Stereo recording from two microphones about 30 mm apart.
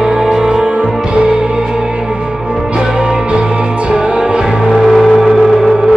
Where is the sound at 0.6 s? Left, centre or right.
Right.